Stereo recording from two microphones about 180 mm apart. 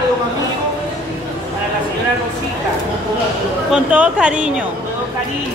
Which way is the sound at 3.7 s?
5° right (ahead or behind).